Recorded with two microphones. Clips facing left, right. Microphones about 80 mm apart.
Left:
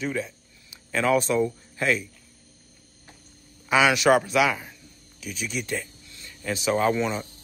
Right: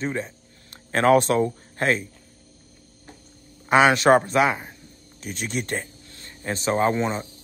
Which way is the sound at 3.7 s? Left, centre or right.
Right.